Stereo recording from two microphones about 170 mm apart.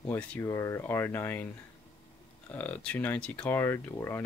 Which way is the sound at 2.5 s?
10° left (ahead or behind).